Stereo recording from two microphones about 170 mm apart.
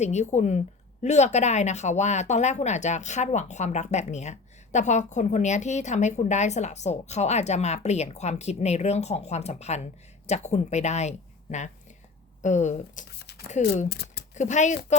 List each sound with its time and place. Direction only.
0.0 s speech: 40° left (ahead or behind)
12.4 s speech: 45° left (ahead or behind)
13.1 s a sound: 75° left (ahead or behind)
14.3 s speech: 45° left (ahead or behind)